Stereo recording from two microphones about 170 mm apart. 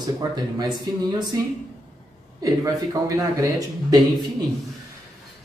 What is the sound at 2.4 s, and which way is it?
Speech, 20° right (ahead or behind).